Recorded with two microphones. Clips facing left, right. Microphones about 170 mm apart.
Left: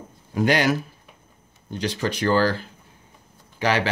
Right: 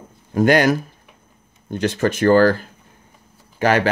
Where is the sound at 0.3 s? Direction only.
50° right (ahead or behind).